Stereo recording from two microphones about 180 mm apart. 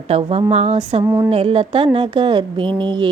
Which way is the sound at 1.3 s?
30° right (ahead or behind).